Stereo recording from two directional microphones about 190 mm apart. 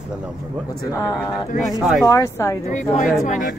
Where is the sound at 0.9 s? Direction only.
20° left (ahead or behind).